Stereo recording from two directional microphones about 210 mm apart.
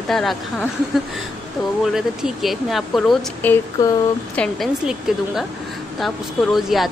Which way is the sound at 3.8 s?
15° left (ahead or behind).